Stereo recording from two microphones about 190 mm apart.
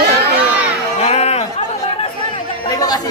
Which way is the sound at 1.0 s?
35° left (ahead or behind).